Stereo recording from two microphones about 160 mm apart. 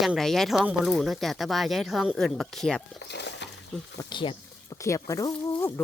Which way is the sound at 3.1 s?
90° left.